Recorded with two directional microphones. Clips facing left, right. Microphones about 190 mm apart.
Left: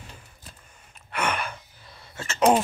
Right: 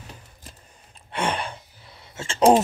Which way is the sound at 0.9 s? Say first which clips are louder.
Right 2 dB; 30° right (ahead or behind).